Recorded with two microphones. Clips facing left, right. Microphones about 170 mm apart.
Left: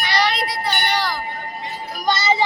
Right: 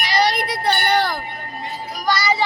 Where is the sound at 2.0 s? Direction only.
25° left (ahead or behind).